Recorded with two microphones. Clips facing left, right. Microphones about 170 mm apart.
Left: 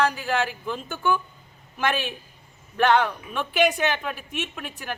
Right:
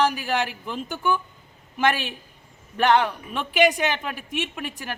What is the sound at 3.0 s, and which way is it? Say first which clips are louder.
A woman's voice: even; 10° right (ahead or behind).